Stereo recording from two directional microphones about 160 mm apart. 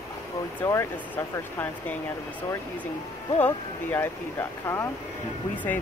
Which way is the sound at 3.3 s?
15° left (ahead or behind).